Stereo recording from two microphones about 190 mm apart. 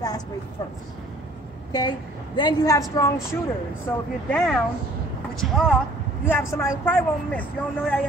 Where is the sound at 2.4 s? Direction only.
20° left (ahead or behind).